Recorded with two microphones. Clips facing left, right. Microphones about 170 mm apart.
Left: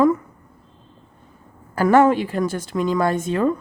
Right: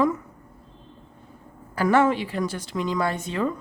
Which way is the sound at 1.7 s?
50° left (ahead or behind).